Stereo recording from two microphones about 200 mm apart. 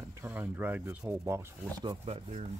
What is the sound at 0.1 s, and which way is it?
Speech, 10° right (ahead or behind).